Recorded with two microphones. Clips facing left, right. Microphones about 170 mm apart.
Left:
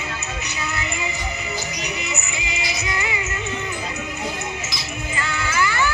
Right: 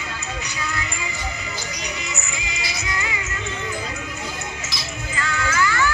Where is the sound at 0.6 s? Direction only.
20° left (ahead or behind).